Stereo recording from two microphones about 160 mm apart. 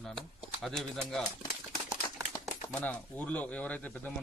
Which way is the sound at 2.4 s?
10° left (ahead or behind).